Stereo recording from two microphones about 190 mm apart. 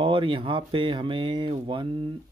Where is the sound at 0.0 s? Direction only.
25° right (ahead or behind).